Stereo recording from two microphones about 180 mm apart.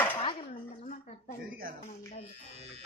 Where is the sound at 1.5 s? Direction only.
55° right (ahead or behind).